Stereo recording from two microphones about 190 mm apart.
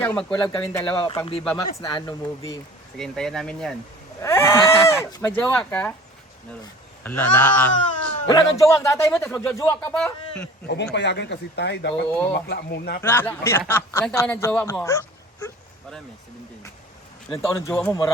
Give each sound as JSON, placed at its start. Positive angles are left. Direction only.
{"t": 0.0, "sound": "speech", "side_deg": 5}
{"t": 0.4, "sound": "speech", "side_deg": 20}
{"t": 1.0, "sound": "speech", "side_deg": 25}
{"t": 3.0, "sound": "speech", "side_deg": 0}
{"t": 4.2, "sound": "honk", "side_deg": 15}
{"t": 5.2, "sound": "speech", "side_deg": 10}
{"t": 7.0, "sound": "speech", "side_deg": 10}
{"t": 8.3, "sound": "speech", "side_deg": 20}
{"t": 10.9, "sound": "speech", "side_deg": 65}
{"t": 12.0, "sound": "speech", "side_deg": 10}
{"t": 12.3, "sound": "speech", "side_deg": 60}
{"t": 13.0, "sound": "speech", "side_deg": 10}
{"t": 17.4, "sound": "speech", "side_deg": 15}